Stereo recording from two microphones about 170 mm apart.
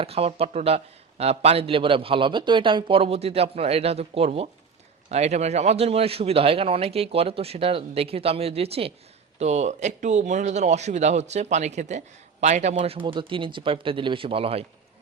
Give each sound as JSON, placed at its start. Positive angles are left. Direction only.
{"t": 0.0, "sound": "speech", "side_deg": -35}